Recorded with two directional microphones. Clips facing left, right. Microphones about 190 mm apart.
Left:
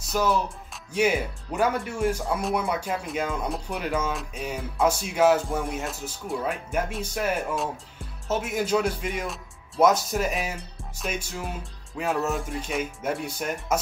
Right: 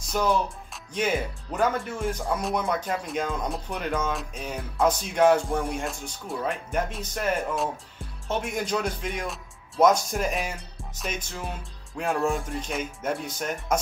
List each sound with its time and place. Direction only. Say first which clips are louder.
0.0 s speech: even; 5° left (ahead or behind)